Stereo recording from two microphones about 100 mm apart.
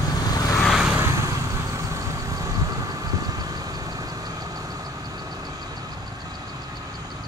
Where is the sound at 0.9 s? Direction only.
30° right (ahead or behind).